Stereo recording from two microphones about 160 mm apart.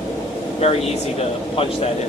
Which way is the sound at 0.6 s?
40° left (ahead or behind).